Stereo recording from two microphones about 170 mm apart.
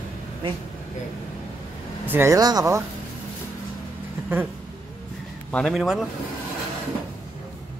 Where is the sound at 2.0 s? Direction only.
15° right (ahead or behind).